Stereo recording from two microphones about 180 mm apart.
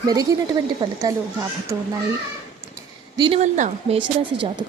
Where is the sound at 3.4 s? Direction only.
40° right (ahead or behind).